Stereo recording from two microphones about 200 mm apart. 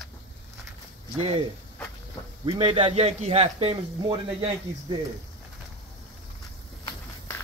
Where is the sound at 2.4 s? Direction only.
25° right (ahead or behind).